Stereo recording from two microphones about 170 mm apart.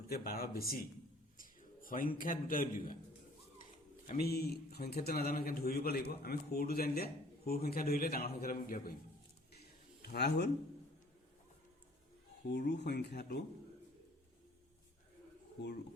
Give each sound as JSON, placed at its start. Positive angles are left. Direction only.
{"t": 0.1, "sound": "a man's voice", "side_deg": 60}
{"t": 1.4, "sound": "a sound", "side_deg": 55}
{"t": 2.1, "sound": "a man's voice", "side_deg": 55}
{"t": 10.1, "sound": "speech", "side_deg": 70}
{"t": 12.5, "sound": "speech", "side_deg": 70}